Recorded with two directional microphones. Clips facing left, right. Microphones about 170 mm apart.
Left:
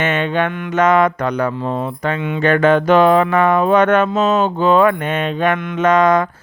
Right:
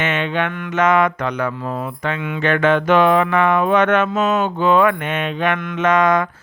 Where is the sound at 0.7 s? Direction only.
35° left (ahead or behind).